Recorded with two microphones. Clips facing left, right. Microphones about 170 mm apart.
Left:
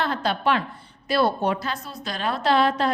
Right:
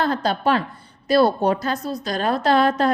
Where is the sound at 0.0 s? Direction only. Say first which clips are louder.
Right 3 dB; 40° right (ahead or behind).